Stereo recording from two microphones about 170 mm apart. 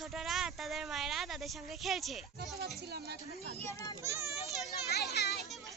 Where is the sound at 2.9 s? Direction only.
75° right (ahead or behind).